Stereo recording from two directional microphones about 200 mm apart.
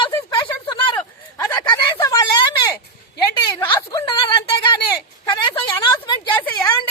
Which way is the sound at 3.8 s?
20° left (ahead or behind).